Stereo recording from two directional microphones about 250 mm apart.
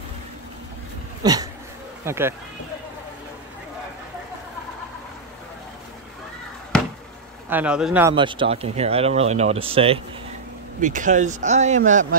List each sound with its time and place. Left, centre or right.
1.2 s a sound: centre
2.0 s speech: centre
7.4 s a man's voice: centre
8.1 s speech: centre